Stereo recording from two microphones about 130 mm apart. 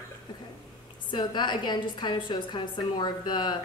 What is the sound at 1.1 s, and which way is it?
A woman's voice, 35° left (ahead or behind).